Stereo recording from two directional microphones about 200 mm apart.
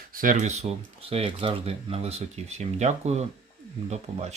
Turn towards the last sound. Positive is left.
turn(degrees=-35)  # may be behind; listen again after turning